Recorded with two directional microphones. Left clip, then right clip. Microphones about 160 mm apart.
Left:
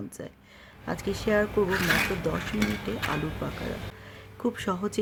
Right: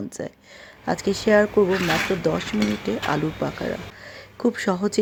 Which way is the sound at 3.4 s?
25° right (ahead or behind).